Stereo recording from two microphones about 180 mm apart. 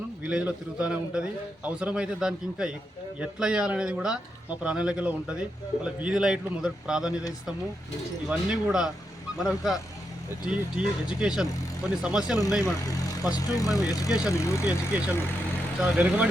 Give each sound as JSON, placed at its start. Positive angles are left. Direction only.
{"t": 0.3, "sound": "speech", "side_deg": -5}
{"t": 8.3, "sound": "speech", "side_deg": -5}
{"t": 13.7, "sound": "speech", "side_deg": 20}
{"t": 14.6, "sound": "speech", "side_deg": -5}